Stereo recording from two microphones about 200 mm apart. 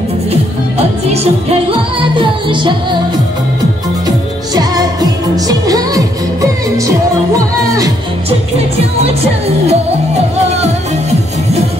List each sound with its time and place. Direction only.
1.0 s music: 30° right (ahead or behind)
4.6 s music: 20° right (ahead or behind)
8.3 s music: 30° right (ahead or behind)